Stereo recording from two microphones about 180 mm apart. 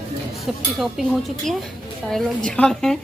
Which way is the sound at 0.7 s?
Centre (ahead or behind).